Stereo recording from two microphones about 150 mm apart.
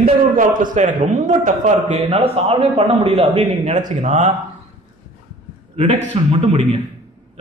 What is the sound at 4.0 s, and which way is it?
Speech, 50° right (ahead or behind).